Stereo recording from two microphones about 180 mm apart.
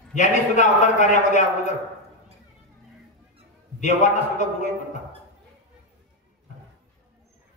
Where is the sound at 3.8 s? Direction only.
40° left (ahead or behind).